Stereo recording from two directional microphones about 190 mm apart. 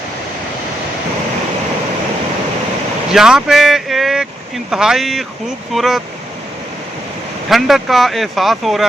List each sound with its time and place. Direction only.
3.1 s speech: 5° right (ahead or behind)
7.5 s speech: centre (ahead or behind)